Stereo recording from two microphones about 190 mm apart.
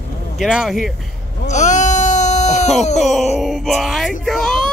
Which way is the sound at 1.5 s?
40° left (ahead or behind).